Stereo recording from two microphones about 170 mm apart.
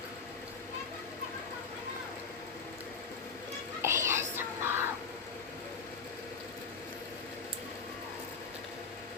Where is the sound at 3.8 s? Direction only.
15° right (ahead or behind).